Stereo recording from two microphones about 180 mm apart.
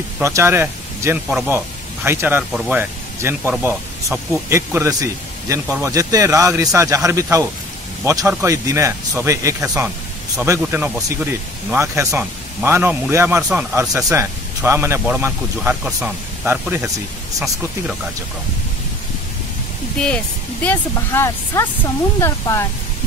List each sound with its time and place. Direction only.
0.2 s a man's voice: 15° right (ahead or behind)
20.6 s speech: 15° left (ahead or behind)